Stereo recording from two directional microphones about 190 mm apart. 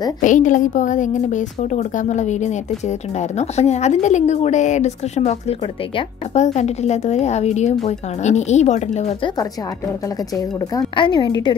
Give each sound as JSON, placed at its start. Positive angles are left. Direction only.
{"t": 0.2, "sound": "a woman's voice", "side_deg": 45}
{"t": 10.0, "sound": "a woman's voice", "side_deg": 20}